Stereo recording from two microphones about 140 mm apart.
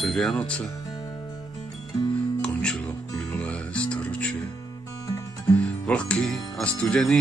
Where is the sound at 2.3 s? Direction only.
5° left (ahead or behind).